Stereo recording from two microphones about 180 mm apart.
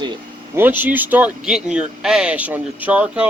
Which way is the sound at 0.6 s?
10° right (ahead or behind).